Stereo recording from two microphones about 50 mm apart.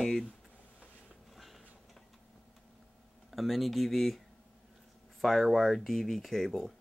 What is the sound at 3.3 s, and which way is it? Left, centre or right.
Speech, centre.